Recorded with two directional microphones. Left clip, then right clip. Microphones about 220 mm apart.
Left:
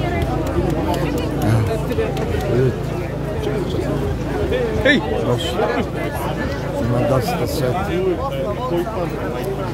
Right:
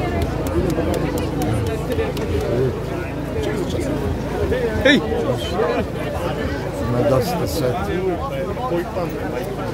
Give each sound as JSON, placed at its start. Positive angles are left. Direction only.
{"t": 4.9, "sound": "speech", "side_deg": -35}